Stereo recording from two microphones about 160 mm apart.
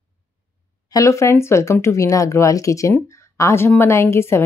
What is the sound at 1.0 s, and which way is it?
Speech, 20° left (ahead or behind).